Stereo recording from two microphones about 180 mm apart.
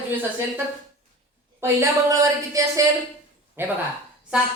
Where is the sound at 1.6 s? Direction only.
15° right (ahead or behind).